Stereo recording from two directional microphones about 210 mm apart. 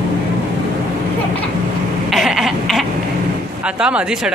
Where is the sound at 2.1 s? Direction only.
Centre (ahead or behind).